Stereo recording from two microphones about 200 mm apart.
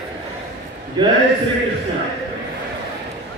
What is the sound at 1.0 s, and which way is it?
Speech, 20° right (ahead or behind).